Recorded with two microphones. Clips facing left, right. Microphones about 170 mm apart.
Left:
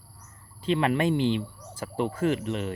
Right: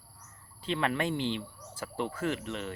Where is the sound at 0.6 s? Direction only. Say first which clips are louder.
Left 6 dB; 15° left (ahead or behind).